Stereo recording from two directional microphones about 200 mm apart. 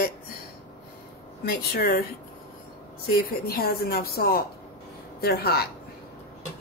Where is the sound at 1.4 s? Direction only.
50° left (ahead or behind).